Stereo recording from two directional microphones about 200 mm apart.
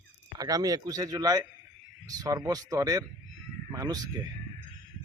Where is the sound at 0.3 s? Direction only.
20° right (ahead or behind).